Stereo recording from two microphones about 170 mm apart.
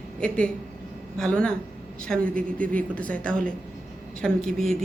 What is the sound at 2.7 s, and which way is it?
A man's voice, 5° left (ahead or behind).